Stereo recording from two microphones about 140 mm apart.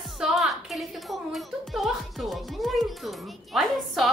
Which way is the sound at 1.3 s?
Centre (ahead or behind).